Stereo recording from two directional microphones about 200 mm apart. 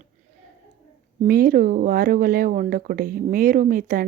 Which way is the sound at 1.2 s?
45° right (ahead or behind).